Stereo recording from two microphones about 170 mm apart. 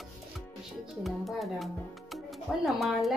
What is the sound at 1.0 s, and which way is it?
A child's voice, centre (ahead or behind).